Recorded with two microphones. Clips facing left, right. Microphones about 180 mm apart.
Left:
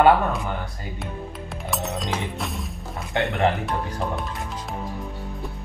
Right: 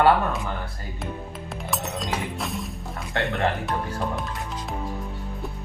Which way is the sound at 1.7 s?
Centre (ahead or behind).